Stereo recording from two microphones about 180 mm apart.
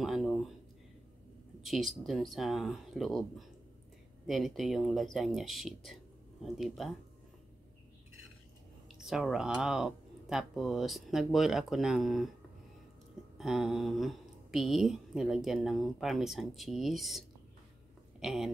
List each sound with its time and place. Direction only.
0.0 s a sound: centre (ahead or behind)
1.6 s speech: centre (ahead or behind)
8.8 s speech: centre (ahead or behind)
13.4 s speech: 5° right (ahead or behind)
18.2 s speech: centre (ahead or behind)